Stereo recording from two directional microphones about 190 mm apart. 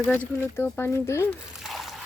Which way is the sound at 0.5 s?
10° left (ahead or behind).